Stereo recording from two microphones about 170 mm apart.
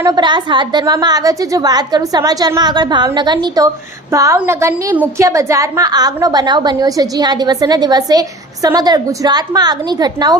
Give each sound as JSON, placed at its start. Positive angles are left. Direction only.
{"t": 0.0, "sound": "a woman's voice", "side_deg": -25}